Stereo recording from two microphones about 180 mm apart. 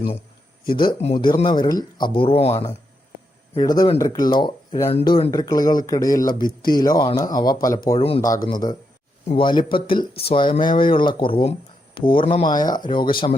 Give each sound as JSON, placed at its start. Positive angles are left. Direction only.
{"t": 0.8, "sound": "speech", "side_deg": 25}
{"t": 3.6, "sound": "speech", "side_deg": 20}
{"t": 7.9, "sound": "speech", "side_deg": 30}
{"t": 8.4, "sound": "speech", "side_deg": 20}